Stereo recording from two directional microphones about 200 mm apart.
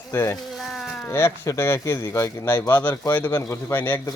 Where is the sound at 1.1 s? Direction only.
15° left (ahead or behind).